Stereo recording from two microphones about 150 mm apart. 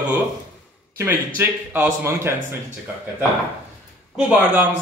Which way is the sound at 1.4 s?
10° right (ahead or behind).